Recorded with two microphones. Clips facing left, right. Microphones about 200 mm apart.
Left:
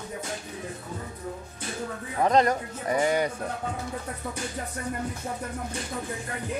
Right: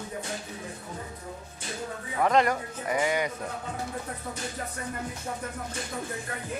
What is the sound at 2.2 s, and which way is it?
Speech, 35° left (ahead or behind).